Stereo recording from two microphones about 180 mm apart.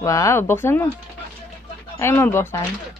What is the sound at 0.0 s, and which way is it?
Speech, 15° left (ahead or behind).